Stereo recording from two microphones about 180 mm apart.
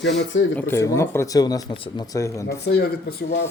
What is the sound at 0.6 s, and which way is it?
Speech, 15° left (ahead or behind).